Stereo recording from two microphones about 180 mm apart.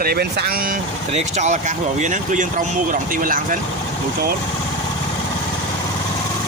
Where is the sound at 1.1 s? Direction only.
40° right (ahead or behind).